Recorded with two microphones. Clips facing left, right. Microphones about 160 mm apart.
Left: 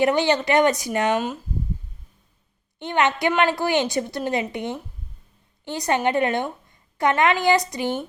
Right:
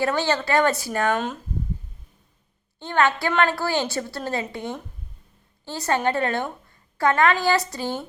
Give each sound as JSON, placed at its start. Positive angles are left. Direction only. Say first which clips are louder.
{"t": 0.0, "sound": "a woman's voice", "louder": "left 4 dB", "side_deg": 20}
{"t": 2.7, "sound": "a woman's voice", "louder": "even", "side_deg": 20}